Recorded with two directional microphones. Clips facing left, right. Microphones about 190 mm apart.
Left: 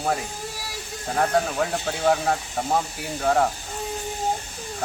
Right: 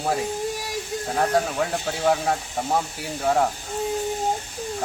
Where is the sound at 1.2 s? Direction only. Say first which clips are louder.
Even; centre (ahead or behind).